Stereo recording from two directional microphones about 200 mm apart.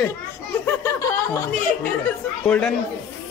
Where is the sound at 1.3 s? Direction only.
15° left (ahead or behind).